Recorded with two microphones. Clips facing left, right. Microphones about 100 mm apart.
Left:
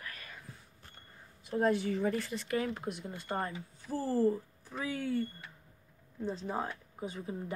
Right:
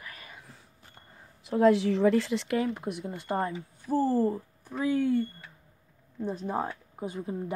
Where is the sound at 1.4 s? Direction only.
90° right.